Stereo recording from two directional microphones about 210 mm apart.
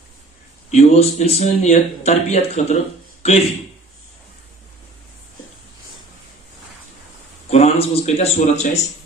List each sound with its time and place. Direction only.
0.7 s speech: 35° left (ahead or behind)
7.4 s speech: 30° left (ahead or behind)